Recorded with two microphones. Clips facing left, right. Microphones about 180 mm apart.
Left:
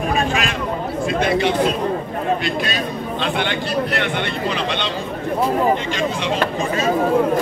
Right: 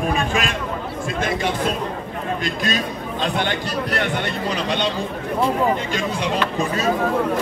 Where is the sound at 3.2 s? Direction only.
40° right (ahead or behind).